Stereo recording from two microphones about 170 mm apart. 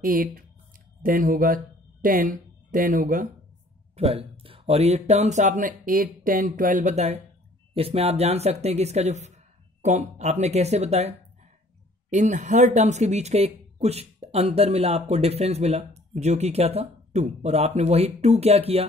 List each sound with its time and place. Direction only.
0.0 s speech: 55° right (ahead or behind)
3.9 s speech: 35° right (ahead or behind)